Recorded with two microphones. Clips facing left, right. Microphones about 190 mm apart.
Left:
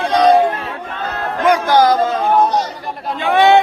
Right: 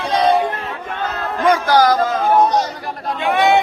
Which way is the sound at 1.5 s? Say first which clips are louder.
Left 2 dB; 20° left (ahead or behind).